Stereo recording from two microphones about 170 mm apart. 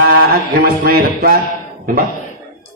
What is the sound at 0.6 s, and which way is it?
Music, 65° right (ahead or behind).